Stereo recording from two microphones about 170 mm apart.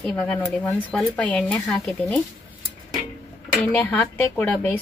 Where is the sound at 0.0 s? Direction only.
5° left (ahead or behind).